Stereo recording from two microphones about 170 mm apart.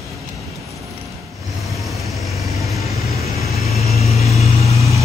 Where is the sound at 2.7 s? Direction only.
40° left (ahead or behind).